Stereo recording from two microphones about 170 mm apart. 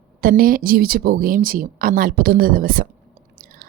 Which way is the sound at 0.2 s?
60° right (ahead or behind).